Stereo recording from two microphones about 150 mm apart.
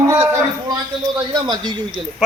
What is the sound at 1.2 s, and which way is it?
Speech, 30° right (ahead or behind).